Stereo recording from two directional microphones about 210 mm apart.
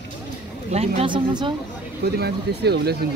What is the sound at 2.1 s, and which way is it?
Speech, 50° right (ahead or behind).